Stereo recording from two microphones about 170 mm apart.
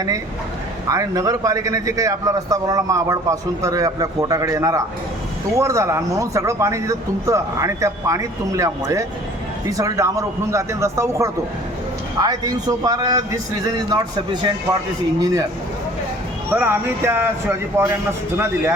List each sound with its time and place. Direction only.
0.9 s a man's voice: 20° right (ahead or behind)
15.2 s a man's voice: 20° right (ahead or behind)
16.6 s speech: 15° right (ahead or behind)